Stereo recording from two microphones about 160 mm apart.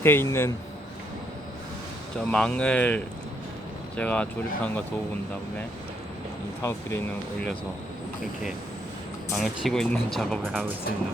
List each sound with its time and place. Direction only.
0.0 s speech: 15° left (ahead or behind)
2.1 s speech: 5° left (ahead or behind)
6.6 s speech: 15° left (ahead or behind)
9.3 s speech: centre (ahead or behind)